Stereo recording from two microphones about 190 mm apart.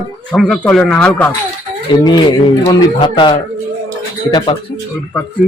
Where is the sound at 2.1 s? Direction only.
20° left (ahead or behind).